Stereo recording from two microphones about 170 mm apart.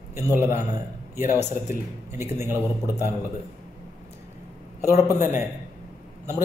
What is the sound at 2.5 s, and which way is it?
Speech, 15° left (ahead or behind).